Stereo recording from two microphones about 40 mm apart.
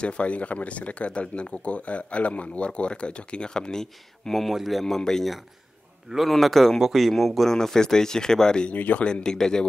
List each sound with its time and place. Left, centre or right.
0.0 s speech: left
4.3 s speech: centre
6.1 s a man's voice: centre
6.4 s speech: centre
7.5 s speech: centre
8.7 s speech: left
9.0 s speech: centre